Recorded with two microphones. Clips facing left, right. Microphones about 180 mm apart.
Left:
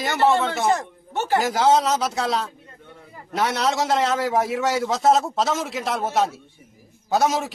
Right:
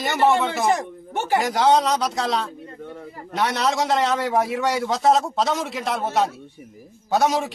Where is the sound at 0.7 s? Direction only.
15° right (ahead or behind).